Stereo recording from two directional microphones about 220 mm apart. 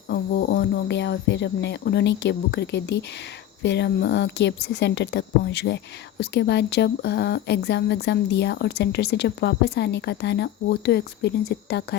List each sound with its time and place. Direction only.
0.1 s a woman's voice: 50° left (ahead or behind)